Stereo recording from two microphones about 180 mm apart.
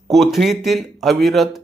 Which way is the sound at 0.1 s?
Centre (ahead or behind).